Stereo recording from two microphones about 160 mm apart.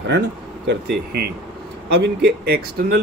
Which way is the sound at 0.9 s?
85° right.